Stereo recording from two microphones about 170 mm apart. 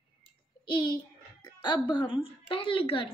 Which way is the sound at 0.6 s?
25° left (ahead or behind).